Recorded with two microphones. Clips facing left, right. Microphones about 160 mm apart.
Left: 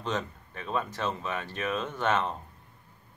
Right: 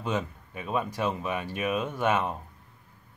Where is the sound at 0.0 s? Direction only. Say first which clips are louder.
Right 2 dB; 10° right (ahead or behind).